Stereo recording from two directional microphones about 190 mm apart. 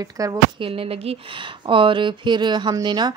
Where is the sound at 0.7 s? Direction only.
30° right (ahead or behind).